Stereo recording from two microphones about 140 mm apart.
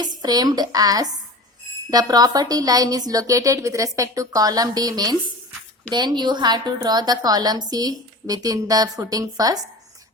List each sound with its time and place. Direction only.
0.0 s a woman's voice: 30° right (ahead or behind)